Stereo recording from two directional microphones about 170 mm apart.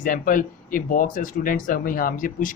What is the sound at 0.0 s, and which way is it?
Speech, 55° left (ahead or behind).